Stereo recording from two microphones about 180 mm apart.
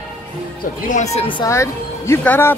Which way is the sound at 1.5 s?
15° left (ahead or behind).